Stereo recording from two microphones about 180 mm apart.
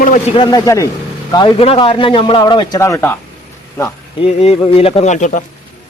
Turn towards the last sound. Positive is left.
turn(degrees=45)  # may be behind; listen again after turning